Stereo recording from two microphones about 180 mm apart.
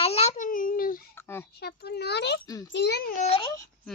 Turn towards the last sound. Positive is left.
turn(degrees=30)  # may be behind; listen again after turning